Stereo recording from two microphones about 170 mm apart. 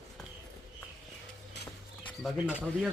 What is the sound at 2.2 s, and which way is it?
Bird, centre (ahead or behind).